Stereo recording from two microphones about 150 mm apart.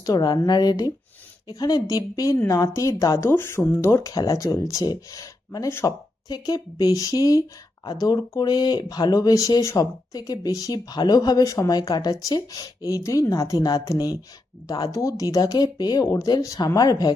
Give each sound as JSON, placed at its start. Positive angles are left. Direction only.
{"t": 0.0, "sound": "a woman's voice", "side_deg": 25}